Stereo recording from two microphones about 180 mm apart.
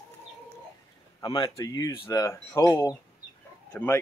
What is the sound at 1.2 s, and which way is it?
Speech, 25° left (ahead or behind).